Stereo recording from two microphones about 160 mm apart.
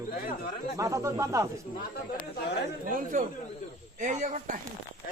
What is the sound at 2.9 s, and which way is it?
Speech, 55° right (ahead or behind).